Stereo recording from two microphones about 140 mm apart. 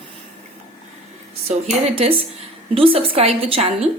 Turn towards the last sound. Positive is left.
turn(degrees=-40)  # may be behind; listen again after turning